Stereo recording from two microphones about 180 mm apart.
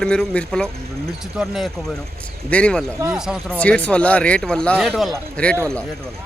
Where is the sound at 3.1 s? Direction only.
5° right (ahead or behind).